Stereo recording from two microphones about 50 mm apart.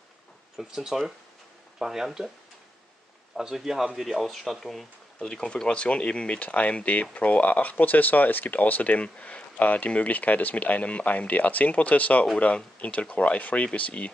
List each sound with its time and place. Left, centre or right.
0.6 s speech: centre
3.3 s speech: centre; by 14.1 s left